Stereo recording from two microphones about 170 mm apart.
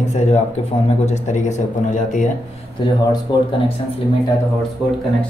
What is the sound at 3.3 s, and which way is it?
Speech, 25° left (ahead or behind).